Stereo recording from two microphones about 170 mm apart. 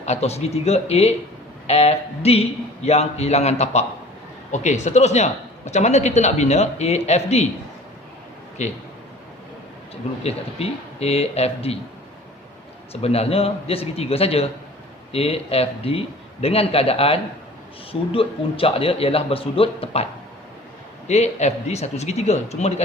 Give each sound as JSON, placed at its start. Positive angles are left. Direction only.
{"t": 0.0, "sound": "speech", "side_deg": 40}
{"t": 8.6, "sound": "a man's voice", "side_deg": 40}
{"t": 10.2, "sound": "speech", "side_deg": 35}
{"t": 12.9, "sound": "speech", "side_deg": 35}
{"t": 21.1, "sound": "speech", "side_deg": 40}